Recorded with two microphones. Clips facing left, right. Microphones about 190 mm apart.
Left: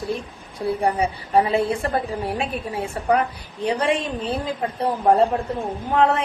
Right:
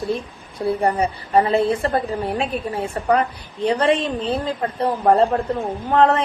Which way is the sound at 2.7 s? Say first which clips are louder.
Right 1 dB; 10° left (ahead or behind).